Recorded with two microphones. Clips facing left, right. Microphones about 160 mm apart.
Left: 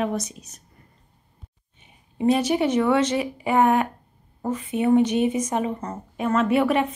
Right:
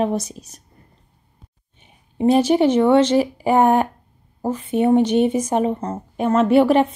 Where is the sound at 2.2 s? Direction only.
30° right (ahead or behind).